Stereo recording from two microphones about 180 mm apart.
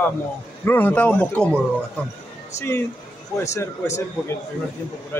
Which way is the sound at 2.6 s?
15° left (ahead or behind).